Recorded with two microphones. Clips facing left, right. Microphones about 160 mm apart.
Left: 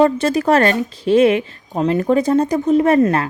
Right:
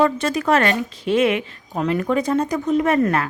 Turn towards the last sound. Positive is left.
turn(degrees=30)  # may be behind; listen again after turning